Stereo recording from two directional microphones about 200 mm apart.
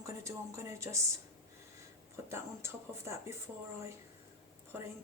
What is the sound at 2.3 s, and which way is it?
A woman's voice, 15° right (ahead or behind).